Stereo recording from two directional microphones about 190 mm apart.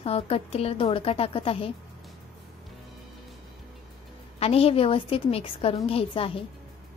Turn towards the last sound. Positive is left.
turn(degrees=30)  # may be behind; listen again after turning